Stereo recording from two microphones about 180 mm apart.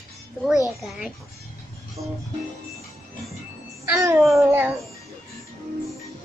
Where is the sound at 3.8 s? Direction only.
15° right (ahead or behind).